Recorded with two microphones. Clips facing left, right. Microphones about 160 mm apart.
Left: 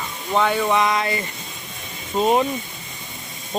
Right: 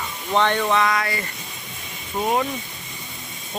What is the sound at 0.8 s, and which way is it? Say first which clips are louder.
Speech: left 1 dB; 20° left (ahead or behind).